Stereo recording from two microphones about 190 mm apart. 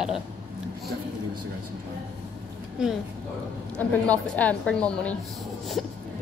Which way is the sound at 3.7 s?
5° left (ahead or behind).